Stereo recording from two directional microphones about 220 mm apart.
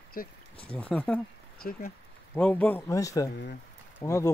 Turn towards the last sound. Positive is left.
turn(degrees=15)  # may be behind; listen again after turning